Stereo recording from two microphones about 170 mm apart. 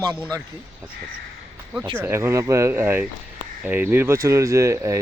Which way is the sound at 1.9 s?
15° right (ahead or behind).